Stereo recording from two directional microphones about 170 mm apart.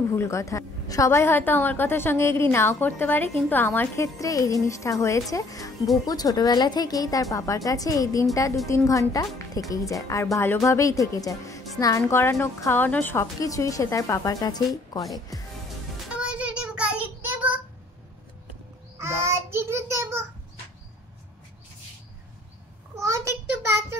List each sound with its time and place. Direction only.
0.1 s a woman's voice: 15° left (ahead or behind)
16.2 s child singing: 5° right (ahead or behind)
18.9 s child singing: 15° right (ahead or behind)
22.9 s a sound: 15° right (ahead or behind)